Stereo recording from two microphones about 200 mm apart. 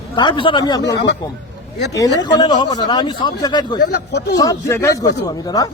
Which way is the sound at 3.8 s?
50° left (ahead or behind).